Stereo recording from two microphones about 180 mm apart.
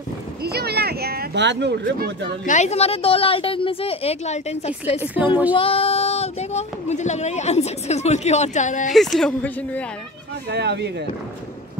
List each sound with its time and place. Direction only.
0.4 s speech: 60° right (ahead or behind)
2.4 s speech: 40° left (ahead or behind)
5.0 s a woman's voice: 10° right (ahead or behind)
5.5 s speech: 30° left (ahead or behind)
8.9 s a woman's voice: centre (ahead or behind)
10.5 s speech: 65° right (ahead or behind)